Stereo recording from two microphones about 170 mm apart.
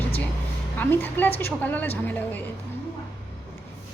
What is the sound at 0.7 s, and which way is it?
Speech, 10° left (ahead or behind).